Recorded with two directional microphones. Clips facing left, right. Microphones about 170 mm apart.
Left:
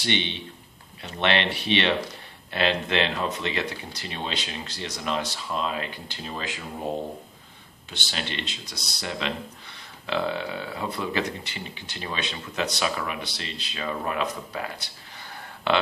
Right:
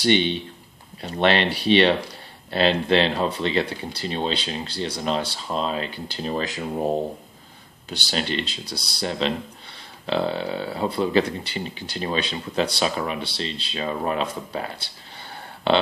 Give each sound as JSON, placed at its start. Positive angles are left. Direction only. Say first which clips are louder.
{"t": 0.0, "sound": "speech", "louder": "right 8 dB", "side_deg": -40}
{"t": 7.9, "sound": "speech", "louder": "right 7 dB", "side_deg": -35}